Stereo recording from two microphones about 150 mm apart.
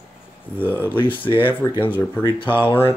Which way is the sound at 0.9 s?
35° left (ahead or behind).